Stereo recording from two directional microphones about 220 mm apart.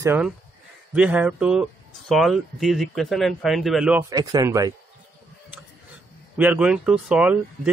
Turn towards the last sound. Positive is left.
turn(degrees=-5)  # may be behind; listen again after turning